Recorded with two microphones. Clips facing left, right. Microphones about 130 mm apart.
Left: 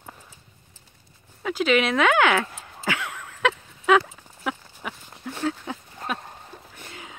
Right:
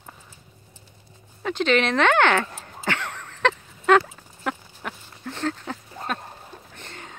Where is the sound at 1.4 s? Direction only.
5° left (ahead or behind).